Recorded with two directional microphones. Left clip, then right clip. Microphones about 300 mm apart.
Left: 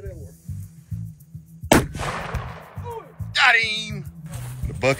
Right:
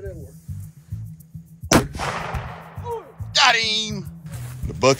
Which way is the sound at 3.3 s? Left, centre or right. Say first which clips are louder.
Even; centre.